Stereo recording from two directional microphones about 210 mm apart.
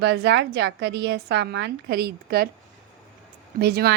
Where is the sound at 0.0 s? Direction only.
55° right (ahead or behind).